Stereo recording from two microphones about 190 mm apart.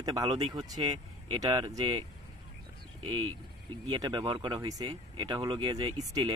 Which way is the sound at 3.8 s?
20° right (ahead or behind).